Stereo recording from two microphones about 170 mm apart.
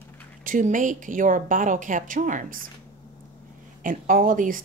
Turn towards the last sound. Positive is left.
turn(degrees=-50)  # may be behind; listen again after turning